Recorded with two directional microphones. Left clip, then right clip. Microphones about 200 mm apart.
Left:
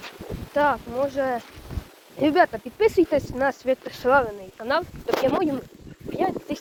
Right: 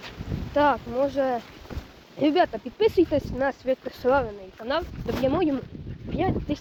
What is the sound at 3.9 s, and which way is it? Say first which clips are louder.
Speech: even; 5° right (ahead or behind).